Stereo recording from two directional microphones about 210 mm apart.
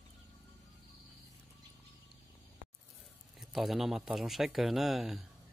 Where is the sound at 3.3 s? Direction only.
Centre (ahead or behind).